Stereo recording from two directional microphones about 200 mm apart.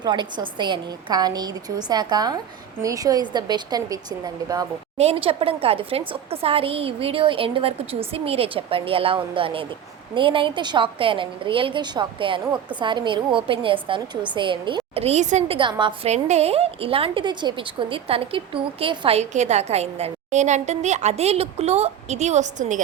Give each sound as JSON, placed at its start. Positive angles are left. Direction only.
{"t": 0.0, "sound": "a woman's voice", "side_deg": -20}
{"t": 4.9, "sound": "a woman's voice", "side_deg": -30}